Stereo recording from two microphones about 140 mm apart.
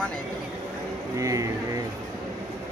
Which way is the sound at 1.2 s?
25° right (ahead or behind).